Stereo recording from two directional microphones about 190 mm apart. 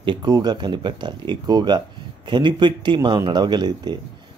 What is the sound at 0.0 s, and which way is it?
Speech, 25° right (ahead or behind).